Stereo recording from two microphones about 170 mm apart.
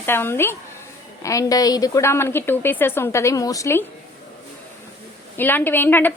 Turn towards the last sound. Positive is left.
turn(degrees=10)  # may be behind; listen again after turning